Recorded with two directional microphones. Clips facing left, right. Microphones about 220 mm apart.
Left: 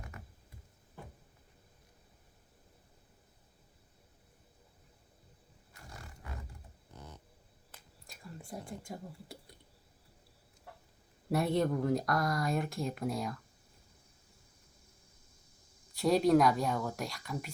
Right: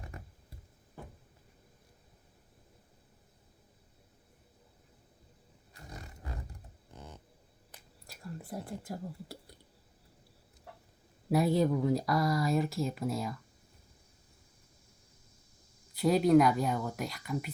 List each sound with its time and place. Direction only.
0.1 s a sound: 30° right (ahead or behind)
5.7 s roaring cats: 20° right (ahead or behind)
8.0 s speech: 5° right (ahead or behind)
11.3 s speech: centre (ahead or behind)
16.0 s speech: centre (ahead or behind)